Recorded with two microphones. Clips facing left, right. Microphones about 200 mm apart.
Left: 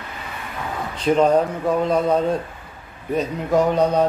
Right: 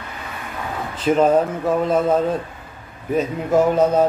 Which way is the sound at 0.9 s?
5° right (ahead or behind).